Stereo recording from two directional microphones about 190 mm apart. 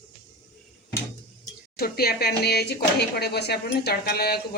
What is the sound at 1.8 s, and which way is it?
Speech, 55° left (ahead or behind).